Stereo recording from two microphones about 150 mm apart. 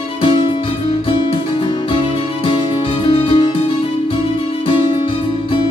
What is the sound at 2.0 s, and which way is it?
Music, 35° left (ahead or behind).